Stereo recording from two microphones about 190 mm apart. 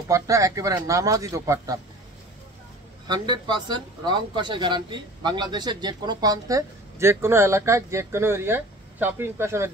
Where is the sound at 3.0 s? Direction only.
20° right (ahead or behind).